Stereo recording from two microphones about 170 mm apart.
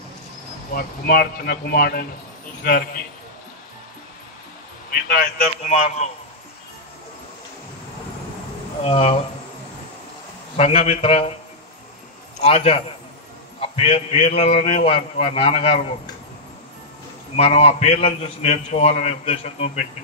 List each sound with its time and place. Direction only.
0.7 s speech: 60° left (ahead or behind)
4.9 s speech: 60° left (ahead or behind)
5.7 s a man's voice: 40° left (ahead or behind)
8.8 s a man's voice: 35° left (ahead or behind)
10.5 s a man's voice: 35° left (ahead or behind)
12.4 s a man's voice: 35° left (ahead or behind)
17.4 s a man's voice: 35° left (ahead or behind)